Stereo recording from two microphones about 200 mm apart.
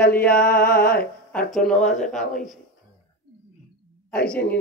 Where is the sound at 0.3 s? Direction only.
45° left (ahead or behind).